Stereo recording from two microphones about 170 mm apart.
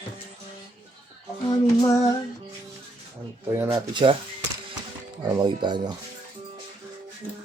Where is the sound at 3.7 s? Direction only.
25° right (ahead or behind).